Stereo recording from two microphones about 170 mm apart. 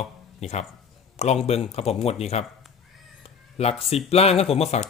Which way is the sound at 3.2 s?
35° left (ahead or behind).